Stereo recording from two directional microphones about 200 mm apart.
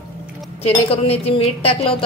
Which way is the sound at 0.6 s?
30° left (ahead or behind).